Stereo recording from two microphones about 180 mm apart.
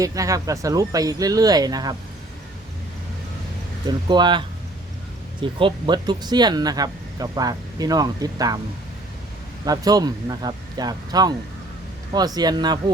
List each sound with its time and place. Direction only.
0.0 s speech: 20° right (ahead or behind)
3.8 s speech: 25° right (ahead or behind)
9.6 s speech: 20° right (ahead or behind)